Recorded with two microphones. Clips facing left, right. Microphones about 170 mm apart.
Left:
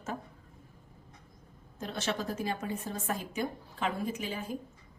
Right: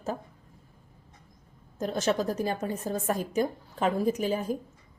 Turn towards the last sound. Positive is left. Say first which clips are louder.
# right 9 dB
turn(degrees=-40)  # may be behind; listen again after turning